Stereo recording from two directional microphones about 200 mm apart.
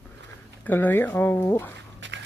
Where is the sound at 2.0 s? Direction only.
65° right (ahead or behind).